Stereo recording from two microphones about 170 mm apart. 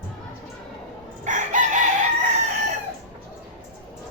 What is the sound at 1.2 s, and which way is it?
Chicken, 45° right (ahead or behind).